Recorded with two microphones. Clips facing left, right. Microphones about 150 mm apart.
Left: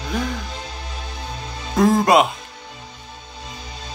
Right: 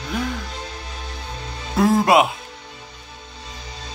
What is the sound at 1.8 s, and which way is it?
Speech, 5° right (ahead or behind).